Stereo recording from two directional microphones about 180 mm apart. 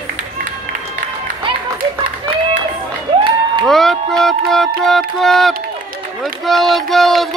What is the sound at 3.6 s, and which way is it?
Speech, centre (ahead or behind).